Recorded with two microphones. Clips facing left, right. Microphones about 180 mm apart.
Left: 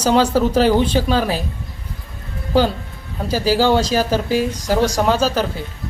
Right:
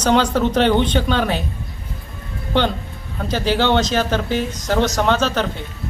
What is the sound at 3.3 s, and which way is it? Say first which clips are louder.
Speech: left 2 dB; 5° left (ahead or behind).